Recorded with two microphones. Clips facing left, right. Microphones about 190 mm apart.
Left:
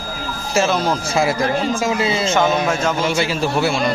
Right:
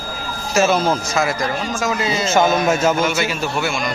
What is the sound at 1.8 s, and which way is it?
Speech, 30° left (ahead or behind).